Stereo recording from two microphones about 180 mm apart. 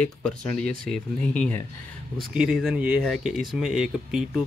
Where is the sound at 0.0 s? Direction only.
5° left (ahead or behind).